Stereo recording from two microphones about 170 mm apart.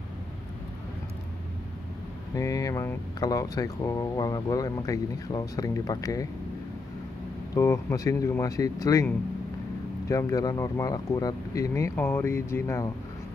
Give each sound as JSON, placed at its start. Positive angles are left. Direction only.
{"t": 2.3, "sound": "speech", "side_deg": 20}
{"t": 7.5, "sound": "speech", "side_deg": 20}